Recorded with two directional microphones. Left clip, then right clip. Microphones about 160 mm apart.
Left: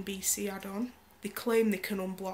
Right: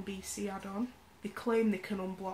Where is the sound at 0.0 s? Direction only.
15° left (ahead or behind).